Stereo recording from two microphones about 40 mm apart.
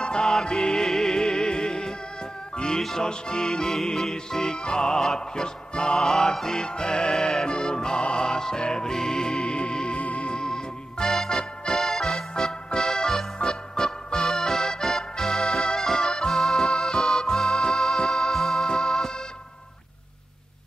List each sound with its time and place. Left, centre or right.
0.0 s music: centre
9.4 s music: left